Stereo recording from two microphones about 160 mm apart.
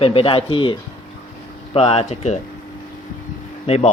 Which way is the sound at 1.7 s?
40° left (ahead or behind).